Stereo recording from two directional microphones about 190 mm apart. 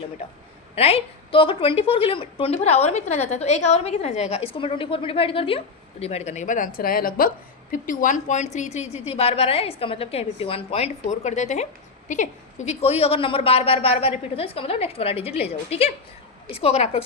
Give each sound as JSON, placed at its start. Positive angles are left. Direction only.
{"t": 0.8, "sound": "a woman's voice", "side_deg": 30}